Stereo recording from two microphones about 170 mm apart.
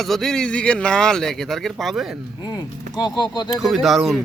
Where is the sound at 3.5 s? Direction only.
Centre (ahead or behind).